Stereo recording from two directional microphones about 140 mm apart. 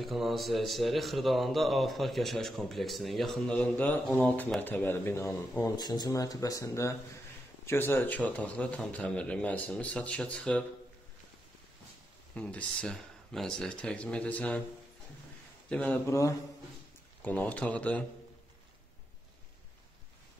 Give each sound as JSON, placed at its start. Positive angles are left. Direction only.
{"t": 0.0, "sound": "a man's voice", "side_deg": 0}
{"t": 12.4, "sound": "a man's voice", "side_deg": 10}
{"t": 15.7, "sound": "a man's voice", "side_deg": 10}
{"t": 16.1, "sound": "speech", "side_deg": 20}
{"t": 17.2, "sound": "a man's voice", "side_deg": 10}